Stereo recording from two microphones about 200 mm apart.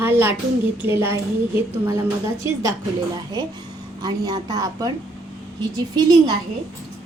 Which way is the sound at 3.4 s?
20° right (ahead or behind).